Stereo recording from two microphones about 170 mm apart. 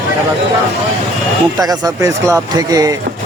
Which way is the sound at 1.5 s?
20° right (ahead or behind).